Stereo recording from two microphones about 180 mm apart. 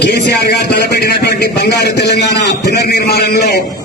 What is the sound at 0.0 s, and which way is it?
Speech, 65° left (ahead or behind).